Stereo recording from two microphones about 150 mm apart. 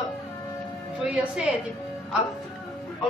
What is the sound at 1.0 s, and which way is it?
Speech, 5° right (ahead or behind).